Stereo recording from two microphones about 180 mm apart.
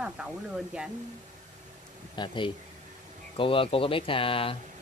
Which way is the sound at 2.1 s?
25° left (ahead or behind).